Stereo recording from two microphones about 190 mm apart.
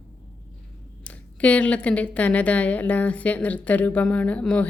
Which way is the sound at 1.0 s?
5° left (ahead or behind).